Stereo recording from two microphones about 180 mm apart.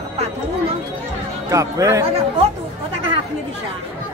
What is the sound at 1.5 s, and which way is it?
Speech, 15° right (ahead or behind).